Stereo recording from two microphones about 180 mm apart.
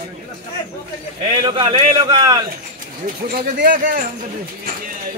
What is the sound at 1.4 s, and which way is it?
A man's voice, 30° right (ahead or behind).